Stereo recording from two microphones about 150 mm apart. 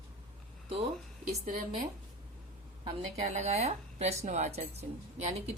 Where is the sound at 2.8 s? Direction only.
45° right (ahead or behind).